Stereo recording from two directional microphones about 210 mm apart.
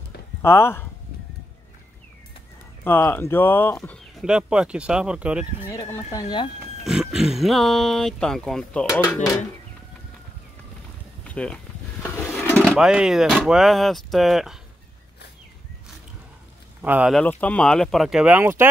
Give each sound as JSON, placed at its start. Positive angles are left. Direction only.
{"t": 0.4, "sound": "speech", "side_deg": 10}
{"t": 2.8, "sound": "speech", "side_deg": 10}
{"t": 4.2, "sound": "speech", "side_deg": -5}
{"t": 5.7, "sound": "speech", "side_deg": 15}
{"t": 6.8, "sound": "speech", "side_deg": 0}
{"t": 8.8, "sound": "speech", "side_deg": 15}
{"t": 11.2, "sound": "a sound", "side_deg": 5}
{"t": 12.7, "sound": "speech", "side_deg": -5}
{"t": 16.8, "sound": "speech", "side_deg": -5}
{"t": 17.2, "sound": "speech", "side_deg": 5}